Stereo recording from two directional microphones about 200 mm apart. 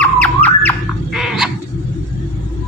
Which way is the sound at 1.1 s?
Centre (ahead or behind).